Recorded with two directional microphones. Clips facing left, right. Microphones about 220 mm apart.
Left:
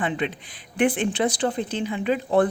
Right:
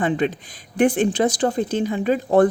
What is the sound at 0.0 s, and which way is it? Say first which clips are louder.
Speech: right 5 dB; 40° right (ahead or behind).